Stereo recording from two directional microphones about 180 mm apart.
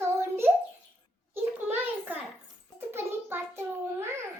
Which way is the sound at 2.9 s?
10° right (ahead or behind).